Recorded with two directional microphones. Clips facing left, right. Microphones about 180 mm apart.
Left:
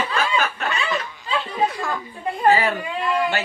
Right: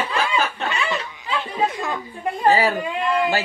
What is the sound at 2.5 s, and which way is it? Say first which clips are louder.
Speech: even; 35° right (ahead or behind).